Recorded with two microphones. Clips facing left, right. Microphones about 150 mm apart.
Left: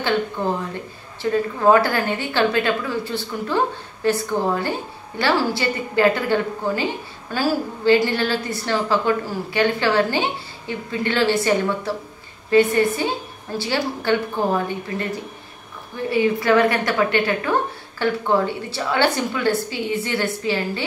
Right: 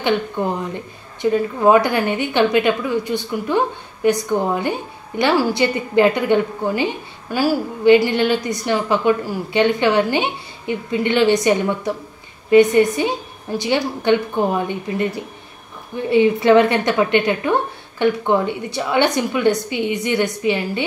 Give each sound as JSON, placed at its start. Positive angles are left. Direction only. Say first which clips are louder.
{"t": 0.4, "sound": "a woman's voice", "louder": "right 2 dB", "side_deg": -15}
{"t": 16.1, "sound": "a woman's voice", "louder": "right 5 dB", "side_deg": -25}